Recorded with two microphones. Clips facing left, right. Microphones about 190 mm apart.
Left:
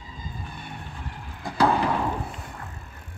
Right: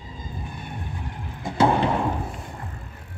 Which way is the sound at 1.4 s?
25° right (ahead or behind).